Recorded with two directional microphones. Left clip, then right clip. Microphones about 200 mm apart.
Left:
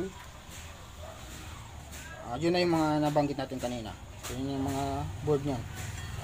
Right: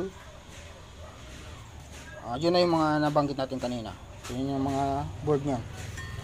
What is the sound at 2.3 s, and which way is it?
Speech, 15° right (ahead or behind).